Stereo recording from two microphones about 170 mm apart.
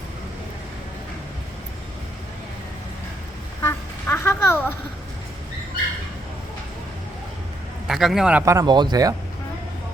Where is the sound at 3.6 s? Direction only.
15° left (ahead or behind).